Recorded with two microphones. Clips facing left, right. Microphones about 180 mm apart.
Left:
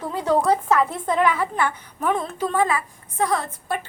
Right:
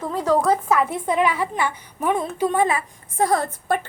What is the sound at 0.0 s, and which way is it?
A woman's voice, 5° left (ahead or behind).